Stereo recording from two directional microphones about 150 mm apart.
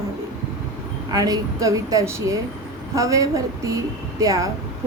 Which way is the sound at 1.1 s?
25° right (ahead or behind).